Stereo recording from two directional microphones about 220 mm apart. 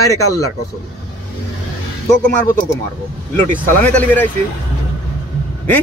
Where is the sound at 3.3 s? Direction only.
10° left (ahead or behind).